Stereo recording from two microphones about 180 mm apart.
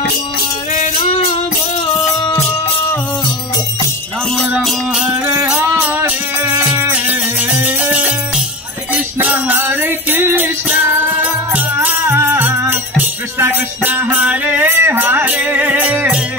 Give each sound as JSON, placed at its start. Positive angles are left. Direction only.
{"t": 2.0, "sound": "music", "side_deg": 20}
{"t": 4.6, "sound": "music", "side_deg": -5}